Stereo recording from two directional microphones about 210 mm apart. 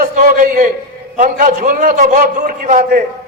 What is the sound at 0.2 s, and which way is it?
A man's voice, 40° right (ahead or behind).